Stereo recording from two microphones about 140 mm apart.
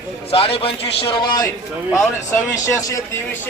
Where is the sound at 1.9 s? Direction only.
20° left (ahead or behind).